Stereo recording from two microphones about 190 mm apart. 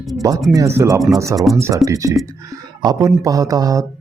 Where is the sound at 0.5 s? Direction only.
15° right (ahead or behind).